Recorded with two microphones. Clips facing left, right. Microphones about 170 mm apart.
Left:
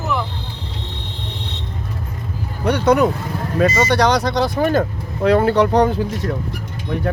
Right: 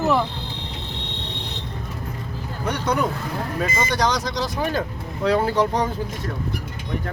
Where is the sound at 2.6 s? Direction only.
70° left (ahead or behind).